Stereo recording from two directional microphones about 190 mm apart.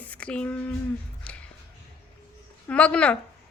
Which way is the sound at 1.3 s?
5° left (ahead or behind).